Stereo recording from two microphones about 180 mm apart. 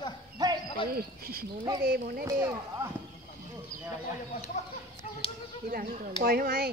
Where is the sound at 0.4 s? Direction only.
20° right (ahead or behind).